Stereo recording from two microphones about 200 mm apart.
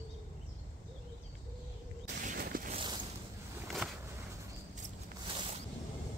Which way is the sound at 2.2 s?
45° right (ahead or behind).